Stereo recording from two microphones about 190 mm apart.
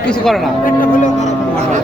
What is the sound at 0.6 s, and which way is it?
Vehicle, 40° left (ahead or behind).